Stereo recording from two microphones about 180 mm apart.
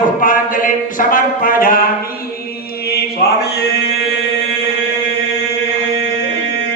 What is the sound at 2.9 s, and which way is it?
Mantra, 60° left (ahead or behind).